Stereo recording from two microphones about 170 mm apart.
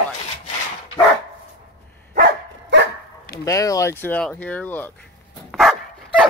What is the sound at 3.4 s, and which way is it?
Speech, 20° left (ahead or behind).